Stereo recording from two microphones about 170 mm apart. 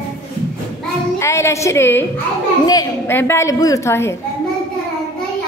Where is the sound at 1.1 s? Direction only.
15° left (ahead or behind).